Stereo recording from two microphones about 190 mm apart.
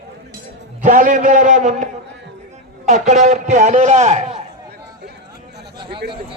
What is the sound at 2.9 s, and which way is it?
A man's voice, 40° right (ahead or behind).